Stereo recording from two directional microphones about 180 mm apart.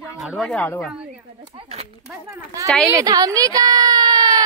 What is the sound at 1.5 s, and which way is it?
Speech, 35° right (ahead or behind).